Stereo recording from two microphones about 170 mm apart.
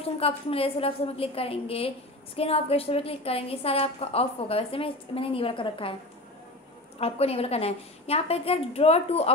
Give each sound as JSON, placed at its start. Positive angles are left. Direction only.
{"t": 0.0, "sound": "a woman's voice", "side_deg": 35}
{"t": 7.0, "sound": "a woman's voice", "side_deg": 35}